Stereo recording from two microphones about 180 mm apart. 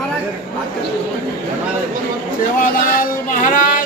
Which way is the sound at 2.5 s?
50° left (ahead or behind).